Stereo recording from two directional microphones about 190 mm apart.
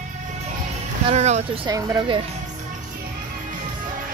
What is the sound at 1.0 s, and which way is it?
Speech, 35° right (ahead or behind).